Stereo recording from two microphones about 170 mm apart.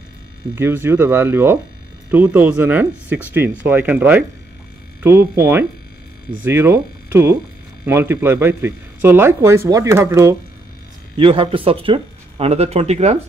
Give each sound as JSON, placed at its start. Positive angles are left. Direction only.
{"t": 0.6, "sound": "speech", "side_deg": -15}
{"t": 11.1, "sound": "speech", "side_deg": -30}